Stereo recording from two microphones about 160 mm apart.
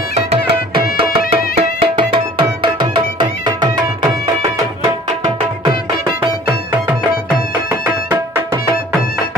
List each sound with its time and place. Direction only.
0.1 s music: 40° right (ahead or behind)